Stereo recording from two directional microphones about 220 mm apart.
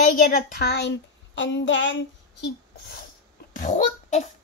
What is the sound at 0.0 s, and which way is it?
Speech, 40° left (ahead or behind).